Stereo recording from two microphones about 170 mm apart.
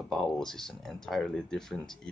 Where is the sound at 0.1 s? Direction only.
Centre (ahead or behind).